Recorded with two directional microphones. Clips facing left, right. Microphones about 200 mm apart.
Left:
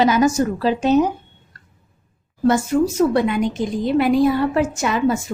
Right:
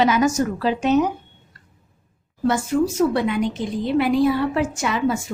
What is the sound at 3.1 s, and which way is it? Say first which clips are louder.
A woman's voice: left 3 dB; 50° left (ahead or behind).